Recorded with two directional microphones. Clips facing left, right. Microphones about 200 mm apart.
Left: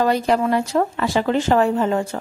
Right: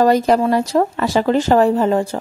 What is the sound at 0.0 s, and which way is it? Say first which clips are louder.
A woman's voice: right 4 dB; 40° right (ahead or behind).